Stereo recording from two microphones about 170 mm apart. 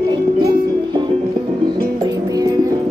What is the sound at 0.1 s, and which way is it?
Music, 25° right (ahead or behind).